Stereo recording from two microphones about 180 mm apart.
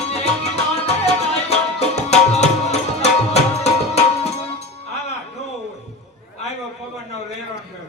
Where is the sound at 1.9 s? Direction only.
35° left (ahead or behind).